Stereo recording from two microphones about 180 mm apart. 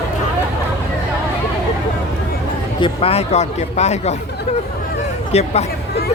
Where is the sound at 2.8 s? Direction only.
35° left (ahead or behind).